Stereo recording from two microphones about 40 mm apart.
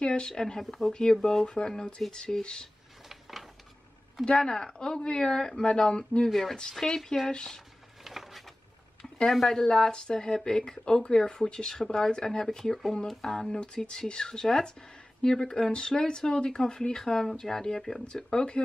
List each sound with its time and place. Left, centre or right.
0.0 s speech: left
0.3 s speech: centre
3.1 s a sound: centre
4.3 s speech: centre
8.0 s a sound: centre
9.3 s speech: centre